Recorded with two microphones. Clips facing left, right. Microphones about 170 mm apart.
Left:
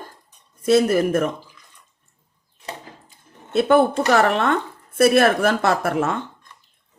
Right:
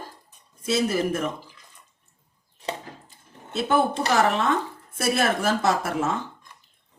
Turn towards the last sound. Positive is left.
turn(degrees=60)  # may be behind; listen again after turning